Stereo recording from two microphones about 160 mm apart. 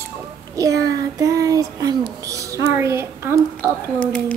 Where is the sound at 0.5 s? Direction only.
20° right (ahead or behind).